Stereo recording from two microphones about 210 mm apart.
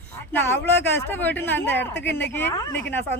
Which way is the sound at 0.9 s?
10° left (ahead or behind).